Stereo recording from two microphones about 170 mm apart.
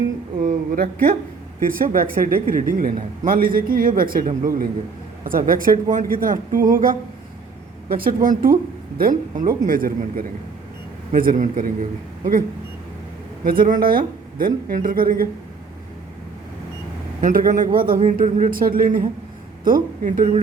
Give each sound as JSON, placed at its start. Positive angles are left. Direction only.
{"t": 0.4, "sound": "a sound", "side_deg": -55}
{"t": 1.5, "sound": "speech", "side_deg": -55}
{"t": 13.4, "sound": "speech", "side_deg": -55}
{"t": 17.2, "sound": "speech", "side_deg": -50}